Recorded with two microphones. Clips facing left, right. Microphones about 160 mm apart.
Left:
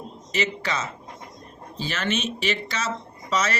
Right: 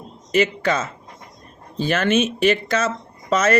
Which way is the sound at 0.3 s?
50° right (ahead or behind).